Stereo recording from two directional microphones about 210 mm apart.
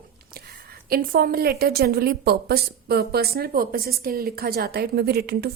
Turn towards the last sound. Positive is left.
turn(degrees=-50)  # may be behind; listen again after turning